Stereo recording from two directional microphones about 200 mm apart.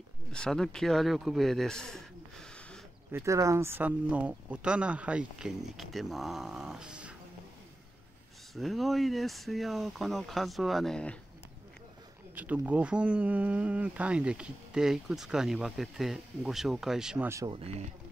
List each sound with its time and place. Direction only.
0.3 s speech: 5° left (ahead or behind)
3.1 s speech: 15° right (ahead or behind)
8.5 s speech: centre (ahead or behind)
12.4 s speech: 10° right (ahead or behind)
17.3 s speech: 15° right (ahead or behind)
17.6 s speech: 30° right (ahead or behind)